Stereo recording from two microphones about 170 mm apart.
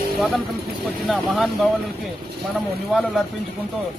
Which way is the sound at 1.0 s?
Centre (ahead or behind).